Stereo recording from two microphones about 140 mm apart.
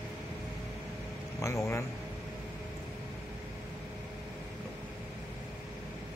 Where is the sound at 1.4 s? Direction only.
20° left (ahead or behind).